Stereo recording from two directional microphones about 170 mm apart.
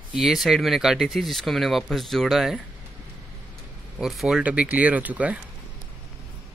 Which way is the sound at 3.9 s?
Centre (ahead or behind).